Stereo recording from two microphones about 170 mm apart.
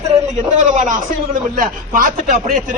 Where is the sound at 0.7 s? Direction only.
45° right (ahead or behind).